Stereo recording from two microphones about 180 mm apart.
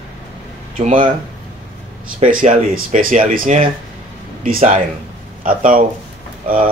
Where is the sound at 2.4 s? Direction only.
40° right (ahead or behind).